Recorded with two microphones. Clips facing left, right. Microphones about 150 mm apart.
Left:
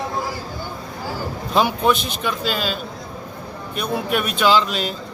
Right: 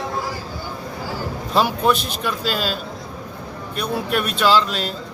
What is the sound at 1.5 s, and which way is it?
A man's voice, centre (ahead or behind).